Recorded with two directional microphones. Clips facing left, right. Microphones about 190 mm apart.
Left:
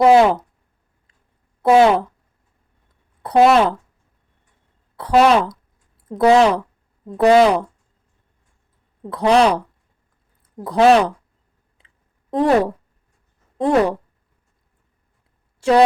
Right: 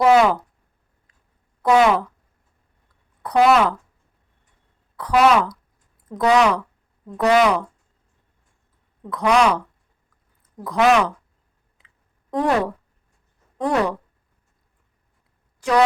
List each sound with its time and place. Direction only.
0.0 s a woman's voice: 30° left (ahead or behind)
1.6 s a woman's voice: 30° left (ahead or behind)
3.2 s a woman's voice: 30° left (ahead or behind)
4.9 s a woman's voice: 30° left (ahead or behind)
9.0 s speech: 30° left (ahead or behind)
12.3 s a woman's voice: 30° left (ahead or behind)
15.6 s a woman's voice: 30° left (ahead or behind)